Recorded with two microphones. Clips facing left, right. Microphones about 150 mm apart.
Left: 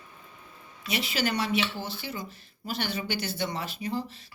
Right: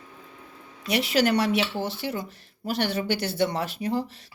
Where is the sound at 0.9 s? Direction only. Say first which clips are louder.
Right 7 dB; 70° right (ahead or behind).